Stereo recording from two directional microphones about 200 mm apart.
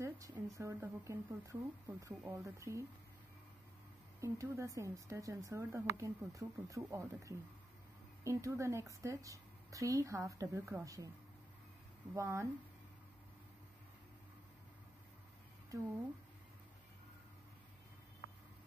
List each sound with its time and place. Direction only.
0.0 s speech: 15° right (ahead or behind)
4.2 s speech: 15° right (ahead or behind)
12.1 s speech: 15° right (ahead or behind)